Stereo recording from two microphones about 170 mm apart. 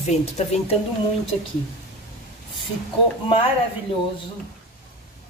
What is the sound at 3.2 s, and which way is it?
Speech, 30° left (ahead or behind).